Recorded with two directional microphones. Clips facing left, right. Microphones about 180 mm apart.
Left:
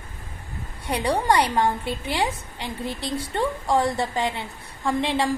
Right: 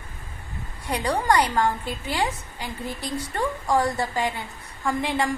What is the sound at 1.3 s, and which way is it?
A woman's voice, 20° left (ahead or behind).